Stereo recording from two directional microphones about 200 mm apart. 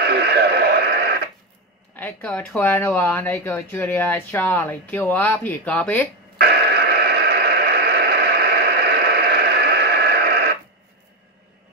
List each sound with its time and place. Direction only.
0.0 s radio: 55° right (ahead or behind)
2.0 s speech: 10° left (ahead or behind)
6.3 s a sound: 50° right (ahead or behind)